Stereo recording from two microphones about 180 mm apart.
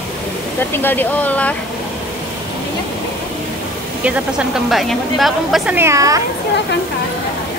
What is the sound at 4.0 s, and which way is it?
A woman's voice, 5° right (ahead or behind).